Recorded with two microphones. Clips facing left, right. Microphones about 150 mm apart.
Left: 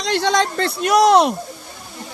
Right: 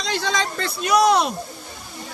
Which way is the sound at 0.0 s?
65° left (ahead or behind).